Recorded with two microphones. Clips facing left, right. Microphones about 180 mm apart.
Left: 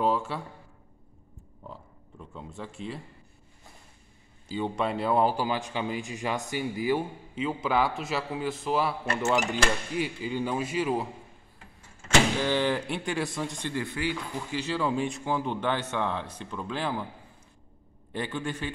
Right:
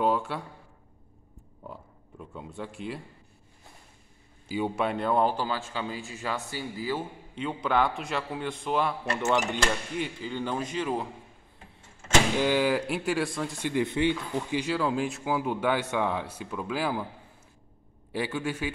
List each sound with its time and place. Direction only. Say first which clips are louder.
0.0 s speech: even; centre (ahead or behind)
1.6 s speech: right 1 dB; 5° right (ahead or behind)
4.5 s speech: right 1 dB; 10° right (ahead or behind)
4.9 s speech: left 2 dB; 5° left (ahead or behind)
7.3 s a man's voice: even; 5° left (ahead or behind)
12.4 s a man's voice: right 2 dB; 10° right (ahead or behind)
13.6 s speech: right 10 dB; 15° right (ahead or behind)
14.8 s speech: even; centre (ahead or behind)
18.1 s speech: right 2 dB; 5° right (ahead or behind)